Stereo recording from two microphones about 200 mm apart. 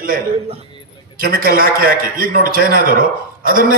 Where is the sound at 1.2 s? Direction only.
45° right (ahead or behind).